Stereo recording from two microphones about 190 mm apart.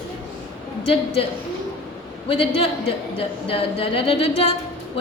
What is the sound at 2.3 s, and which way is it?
A woman's voice, 30° left (ahead or behind).